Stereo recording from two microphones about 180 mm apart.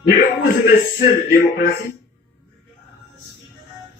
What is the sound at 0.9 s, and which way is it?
Speech, 55° left (ahead or behind).